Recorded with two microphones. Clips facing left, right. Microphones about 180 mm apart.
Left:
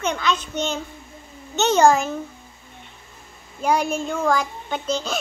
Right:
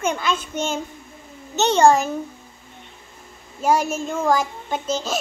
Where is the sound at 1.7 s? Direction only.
30° right (ahead or behind).